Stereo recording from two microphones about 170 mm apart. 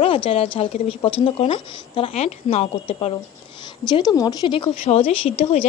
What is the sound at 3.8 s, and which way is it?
Speech, 25° left (ahead or behind).